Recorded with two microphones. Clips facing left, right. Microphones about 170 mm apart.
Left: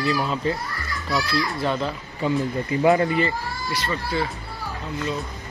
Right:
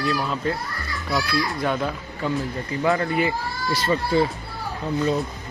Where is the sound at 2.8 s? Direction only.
20° left (ahead or behind).